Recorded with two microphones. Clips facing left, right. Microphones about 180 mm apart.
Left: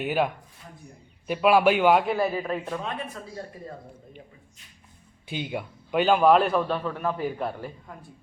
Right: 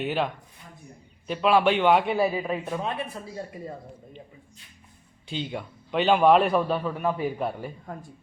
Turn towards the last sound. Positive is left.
turn(degrees=-5)  # may be behind; listen again after turning